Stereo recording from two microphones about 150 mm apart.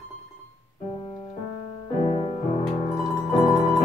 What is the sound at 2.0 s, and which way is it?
Music, 35° left (ahead or behind).